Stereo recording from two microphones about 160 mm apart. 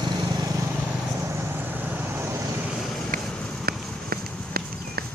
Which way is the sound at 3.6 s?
75° right (ahead or behind).